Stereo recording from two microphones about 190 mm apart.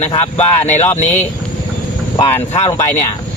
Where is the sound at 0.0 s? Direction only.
35° left (ahead or behind).